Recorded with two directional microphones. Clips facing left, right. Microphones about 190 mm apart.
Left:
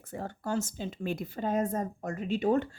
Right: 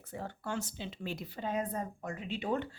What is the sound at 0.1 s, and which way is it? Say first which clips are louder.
A woman's voice: left 5 dB; 45° left (ahead or behind).